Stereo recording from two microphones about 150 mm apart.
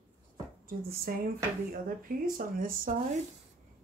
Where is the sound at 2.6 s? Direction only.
65° right (ahead or behind).